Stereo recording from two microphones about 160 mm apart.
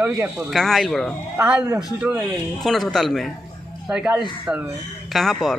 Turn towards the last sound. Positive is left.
turn(degrees=0)  # may be behind; listen again after turning